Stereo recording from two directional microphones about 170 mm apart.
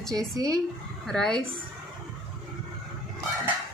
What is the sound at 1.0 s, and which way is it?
Speech, 5° left (ahead or behind).